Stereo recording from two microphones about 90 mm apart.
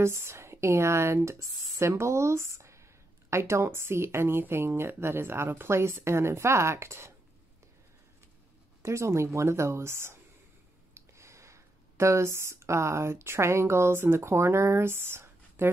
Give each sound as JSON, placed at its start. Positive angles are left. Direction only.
{"t": 0.0, "sound": "speech", "side_deg": -30}
{"t": 8.8, "sound": "speech", "side_deg": -30}